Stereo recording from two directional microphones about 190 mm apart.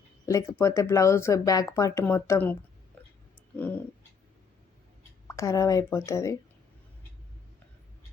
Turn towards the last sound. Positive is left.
turn(degrees=15)  # may be behind; listen again after turning